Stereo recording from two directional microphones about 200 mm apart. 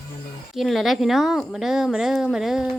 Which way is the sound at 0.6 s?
Centre (ahead or behind).